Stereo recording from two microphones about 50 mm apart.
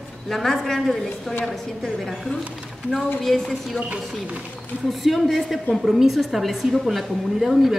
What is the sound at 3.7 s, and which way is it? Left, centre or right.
Speech, right.